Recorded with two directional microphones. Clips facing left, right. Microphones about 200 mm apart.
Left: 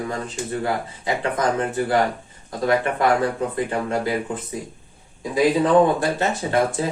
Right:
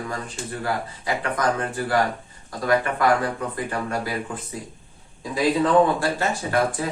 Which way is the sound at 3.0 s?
25° left (ahead or behind).